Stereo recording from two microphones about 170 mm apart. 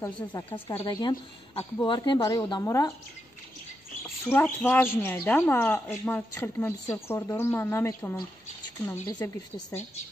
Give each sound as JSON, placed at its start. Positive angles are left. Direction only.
{"t": 0.0, "sound": "a woman's voice", "side_deg": 25}
{"t": 4.3, "sound": "speech", "side_deg": 10}